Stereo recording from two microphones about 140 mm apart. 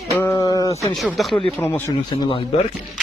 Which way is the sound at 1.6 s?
20° left (ahead or behind).